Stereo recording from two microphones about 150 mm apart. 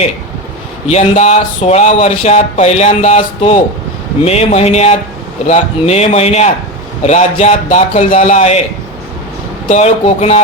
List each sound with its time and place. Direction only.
0.9 s speech: 45° left (ahead or behind)
9.6 s speech: 50° left (ahead or behind)